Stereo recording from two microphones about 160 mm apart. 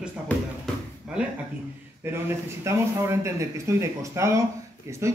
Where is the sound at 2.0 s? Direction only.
15° right (ahead or behind).